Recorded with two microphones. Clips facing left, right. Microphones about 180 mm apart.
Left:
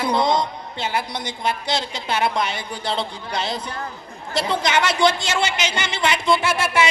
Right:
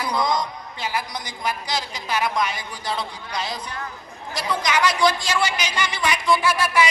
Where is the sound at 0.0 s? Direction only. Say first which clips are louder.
Left 4 dB; 25° left (ahead or behind).